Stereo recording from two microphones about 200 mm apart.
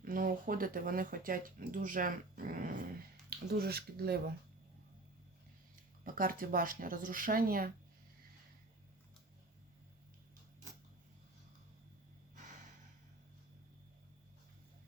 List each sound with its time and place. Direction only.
0.0 s speech: 45° right (ahead or behind)
6.1 s speech: 45° right (ahead or behind)